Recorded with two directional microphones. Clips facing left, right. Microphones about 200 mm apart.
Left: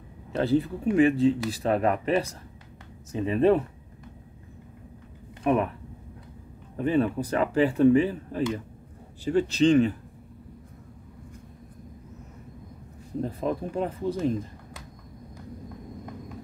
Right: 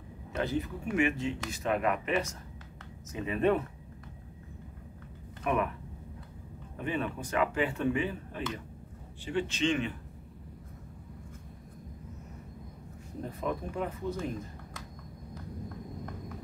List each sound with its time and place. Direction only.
0.3 s speech: 35° left (ahead or behind)
5.4 s speech: 30° left (ahead or behind)
6.8 s speech: 35° left (ahead or behind)
13.2 s speech: 30° left (ahead or behind)